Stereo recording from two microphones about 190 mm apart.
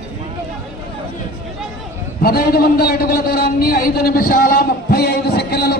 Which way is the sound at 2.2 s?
55° left (ahead or behind).